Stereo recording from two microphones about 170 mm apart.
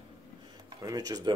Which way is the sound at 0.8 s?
20° right (ahead or behind).